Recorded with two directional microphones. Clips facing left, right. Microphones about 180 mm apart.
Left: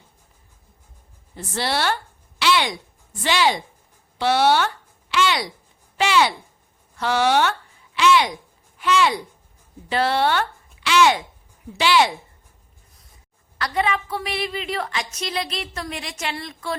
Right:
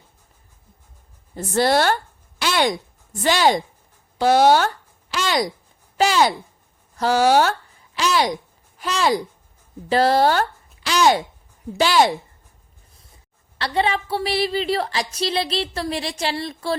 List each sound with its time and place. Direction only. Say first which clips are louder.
1.4 s a woman's voice: right 7 dB; 45° right (ahead or behind)
13.6 s a woman's voice: right 2 dB; 30° right (ahead or behind)